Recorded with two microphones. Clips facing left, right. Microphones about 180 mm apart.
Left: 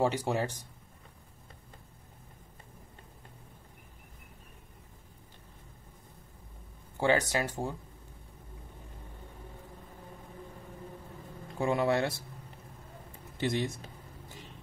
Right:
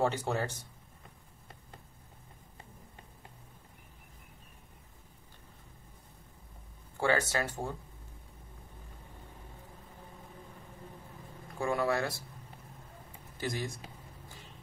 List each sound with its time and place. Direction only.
0.0 s speech: 15° left (ahead or behind)
7.0 s speech: 15° left (ahead or behind)
11.6 s speech: 20° left (ahead or behind)
13.4 s speech: 25° left (ahead or behind)